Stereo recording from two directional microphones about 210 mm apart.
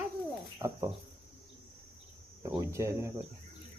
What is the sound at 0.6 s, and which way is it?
Speech, 15° right (ahead or behind).